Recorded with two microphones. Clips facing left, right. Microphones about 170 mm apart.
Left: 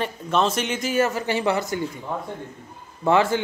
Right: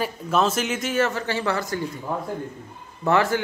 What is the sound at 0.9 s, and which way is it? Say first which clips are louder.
Speech: left 2 dB; 10° left (ahead or behind).